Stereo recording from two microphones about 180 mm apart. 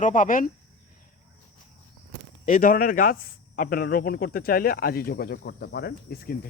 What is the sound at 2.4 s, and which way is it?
Speech, 50° left (ahead or behind).